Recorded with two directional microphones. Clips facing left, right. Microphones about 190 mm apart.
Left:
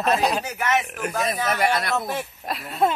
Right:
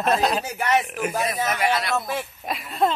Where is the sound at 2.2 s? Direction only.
Centre (ahead or behind).